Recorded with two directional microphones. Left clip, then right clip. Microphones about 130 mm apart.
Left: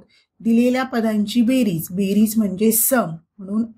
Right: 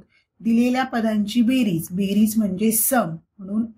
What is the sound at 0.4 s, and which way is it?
A woman's voice, 30° left (ahead or behind).